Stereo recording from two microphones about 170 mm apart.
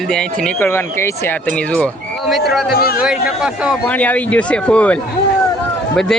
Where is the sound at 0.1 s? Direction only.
5° left (ahead or behind).